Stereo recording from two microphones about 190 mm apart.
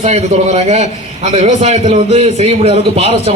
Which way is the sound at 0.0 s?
35° right (ahead or behind).